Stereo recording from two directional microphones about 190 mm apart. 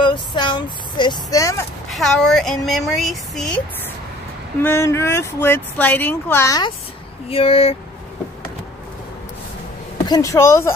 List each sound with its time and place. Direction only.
0.0 s speech: 25° left (ahead or behind)
1.9 s speech: centre (ahead or behind)
4.6 s speech: 15° left (ahead or behind)
7.2 s speech: 30° left (ahead or behind)
9.9 s speech: 20° left (ahead or behind)